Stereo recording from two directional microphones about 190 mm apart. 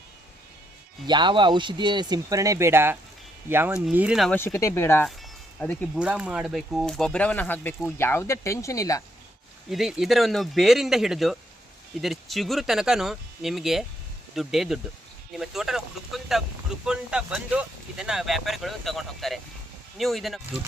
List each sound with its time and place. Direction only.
1.0 s speech: 25° right (ahead or behind); by 4.4 s centre (ahead or behind)
4.4 s speech: 15° left (ahead or behind)
6.0 s speech: 5° right (ahead or behind); by 9.0 s 15° left (ahead or behind)
9.6 s speech: centre (ahead or behind)